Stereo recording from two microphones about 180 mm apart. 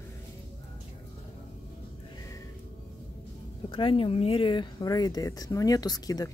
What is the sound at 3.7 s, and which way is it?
Speech, 30° left (ahead or behind).